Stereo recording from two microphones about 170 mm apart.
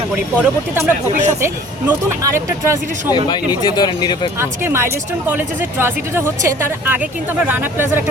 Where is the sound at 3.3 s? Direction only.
25° left (ahead or behind).